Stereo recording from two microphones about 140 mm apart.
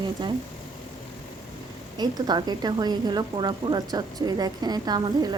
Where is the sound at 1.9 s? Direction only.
30° right (ahead or behind).